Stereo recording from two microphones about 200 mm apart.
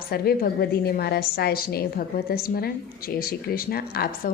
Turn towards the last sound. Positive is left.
turn(degrees=50)  # may be behind; listen again after turning